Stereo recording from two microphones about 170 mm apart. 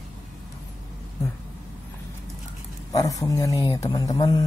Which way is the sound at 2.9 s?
20° left (ahead or behind).